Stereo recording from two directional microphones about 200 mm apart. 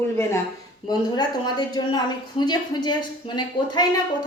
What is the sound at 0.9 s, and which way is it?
A woman's voice, 20° left (ahead or behind).